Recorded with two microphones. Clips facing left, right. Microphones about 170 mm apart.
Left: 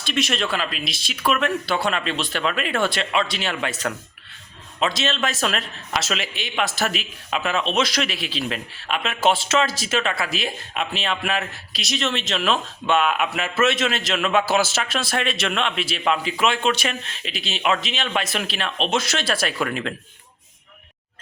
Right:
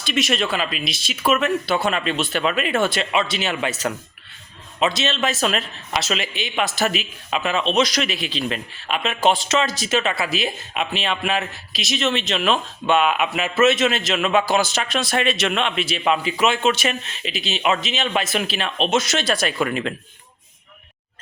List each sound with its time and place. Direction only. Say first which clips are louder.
0.0 s speech: right 2 dB; centre (ahead or behind)